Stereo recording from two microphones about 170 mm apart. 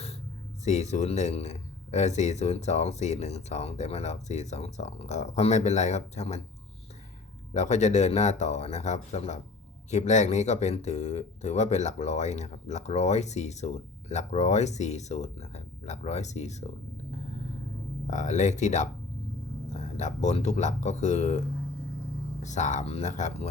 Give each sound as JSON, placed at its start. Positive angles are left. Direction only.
{"t": 0.6, "sound": "speech", "side_deg": 40}
{"t": 7.5, "sound": "speech", "side_deg": 40}
{"t": 18.1, "sound": "speech", "side_deg": 45}
{"t": 22.4, "sound": "speech", "side_deg": 45}